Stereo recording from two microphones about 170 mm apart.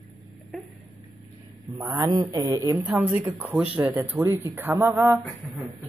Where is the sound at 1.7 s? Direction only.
20° right (ahead or behind).